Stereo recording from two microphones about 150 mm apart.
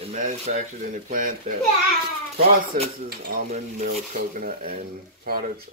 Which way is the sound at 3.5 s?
60° right (ahead or behind).